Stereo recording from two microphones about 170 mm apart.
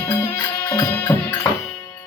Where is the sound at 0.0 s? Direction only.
20° left (ahead or behind).